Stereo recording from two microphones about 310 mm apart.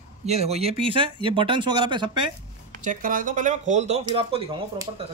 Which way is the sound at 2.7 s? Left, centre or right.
Right.